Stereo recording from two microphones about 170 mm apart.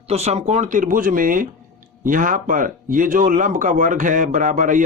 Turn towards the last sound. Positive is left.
turn(degrees=-50)  # may be behind; listen again after turning